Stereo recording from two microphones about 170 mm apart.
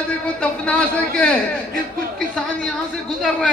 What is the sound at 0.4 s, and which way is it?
Speech, 5° left (ahead or behind).